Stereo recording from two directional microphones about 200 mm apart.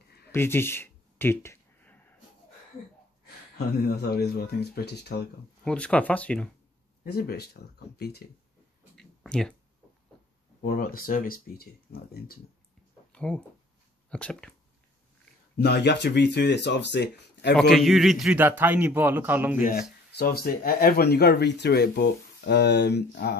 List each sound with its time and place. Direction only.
0.3 s a sound: 10° left (ahead or behind)
3.5 s speech: 50° left (ahead or behind)
5.6 s speech: 5° left (ahead or behind)
7.1 s speech: 50° left (ahead or behind)
8.9 s a sound: centre (ahead or behind)
10.6 s speech: 45° left (ahead or behind)
13.1 s speech: 5° left (ahead or behind)
15.5 s speech: 55° left (ahead or behind)
17.6 s a man's voice: centre (ahead or behind)
19.6 s speech: 45° left (ahead or behind)